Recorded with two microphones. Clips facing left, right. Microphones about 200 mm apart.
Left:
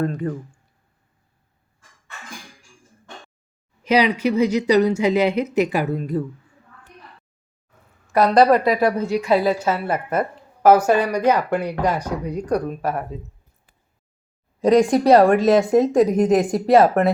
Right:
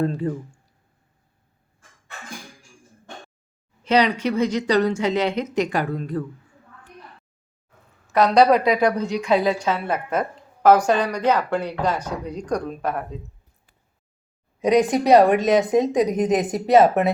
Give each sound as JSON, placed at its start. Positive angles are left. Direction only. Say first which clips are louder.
{"t": 0.0, "sound": "speech", "louder": "even", "side_deg": -30}
{"t": 3.8, "sound": "a woman's voice", "louder": "left 1 dB", "side_deg": 10}
{"t": 8.1, "sound": "a woman's voice", "louder": "left 1 dB", "side_deg": 5}
{"t": 14.8, "sound": "speech", "louder": "left 1 dB", "side_deg": 0}